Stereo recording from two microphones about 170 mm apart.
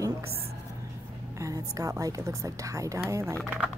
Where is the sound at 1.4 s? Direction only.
20° right (ahead or behind).